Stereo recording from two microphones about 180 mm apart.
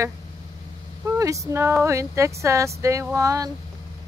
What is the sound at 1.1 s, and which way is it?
Speech, 15° right (ahead or behind).